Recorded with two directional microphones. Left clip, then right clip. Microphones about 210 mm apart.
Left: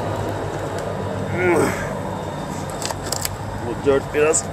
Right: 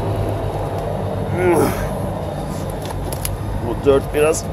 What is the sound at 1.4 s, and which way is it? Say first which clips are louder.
Speech: right 2 dB; 10° right (ahead or behind).